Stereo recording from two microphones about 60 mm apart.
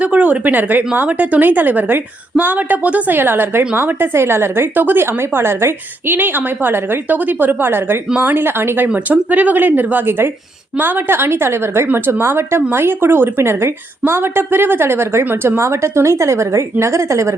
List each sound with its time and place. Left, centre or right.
0.0 s a woman's voice: right
6.1 s a woman's voice: right
9.0 s a woman's voice: right
15.5 s a woman's voice: right